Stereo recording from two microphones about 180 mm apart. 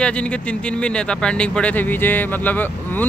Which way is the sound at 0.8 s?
5° left (ahead or behind).